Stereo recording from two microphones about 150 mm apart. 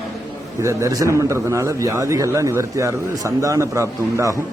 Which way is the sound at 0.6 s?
20° right (ahead or behind).